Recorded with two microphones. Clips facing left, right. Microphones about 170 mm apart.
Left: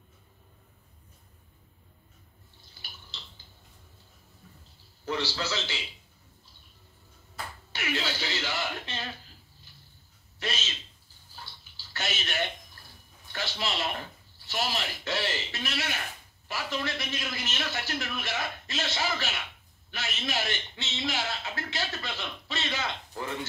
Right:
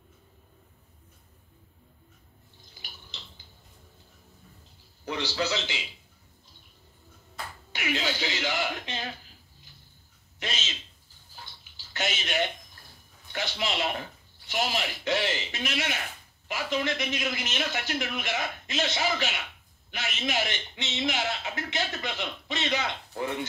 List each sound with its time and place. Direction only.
5.0 s a man's voice: 15° right (ahead or behind)
7.7 s a man's voice: 15° right (ahead or behind)
10.4 s a man's voice: 20° right (ahead or behind)
11.7 s bathtub: 20° right (ahead or behind)
13.3 s a man's voice: 15° right (ahead or behind)